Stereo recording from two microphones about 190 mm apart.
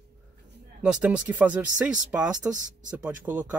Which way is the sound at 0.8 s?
5° right (ahead or behind).